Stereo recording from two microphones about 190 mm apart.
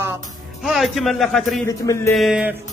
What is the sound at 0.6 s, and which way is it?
A man's voice, centre (ahead or behind).